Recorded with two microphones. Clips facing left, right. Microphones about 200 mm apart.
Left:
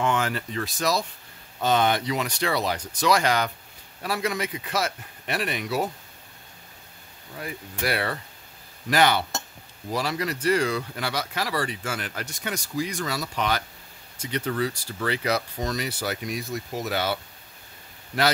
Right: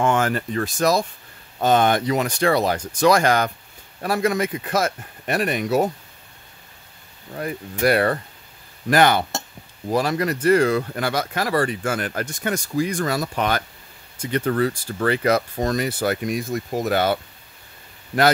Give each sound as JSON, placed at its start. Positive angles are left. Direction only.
{"t": 0.0, "sound": "speech", "side_deg": -50}
{"t": 7.3, "sound": "speech", "side_deg": -45}